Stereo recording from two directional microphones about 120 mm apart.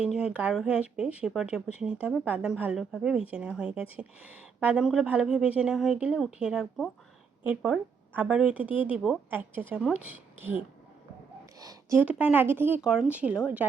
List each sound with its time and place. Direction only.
0.0 s speech: 5° right (ahead or behind)
11.6 s a sound: 30° right (ahead or behind)
12.2 s speech: 15° right (ahead or behind)
12.8 s speech: 5° right (ahead or behind)